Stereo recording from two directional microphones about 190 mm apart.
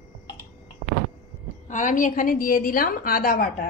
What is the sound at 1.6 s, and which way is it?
A woman's voice, 40° left (ahead or behind).